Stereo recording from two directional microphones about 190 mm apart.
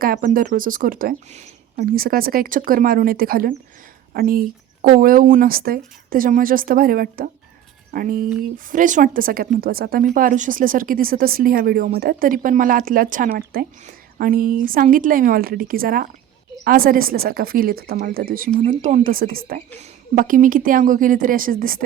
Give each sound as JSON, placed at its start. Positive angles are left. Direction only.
{"t": 0.0, "sound": "speech", "side_deg": -50}